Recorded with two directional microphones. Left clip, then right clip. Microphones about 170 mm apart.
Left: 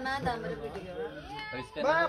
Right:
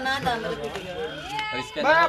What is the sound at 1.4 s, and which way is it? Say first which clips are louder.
Speech: right 10 dB; 45° left (ahead or behind).